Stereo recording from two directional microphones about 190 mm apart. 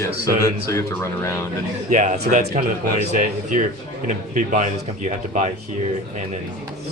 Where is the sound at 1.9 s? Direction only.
40° right (ahead or behind).